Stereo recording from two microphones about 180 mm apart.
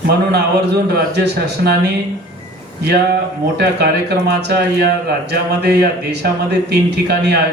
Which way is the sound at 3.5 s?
65° right (ahead or behind).